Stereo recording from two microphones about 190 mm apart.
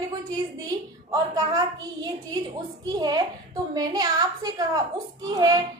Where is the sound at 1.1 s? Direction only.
20° right (ahead or behind).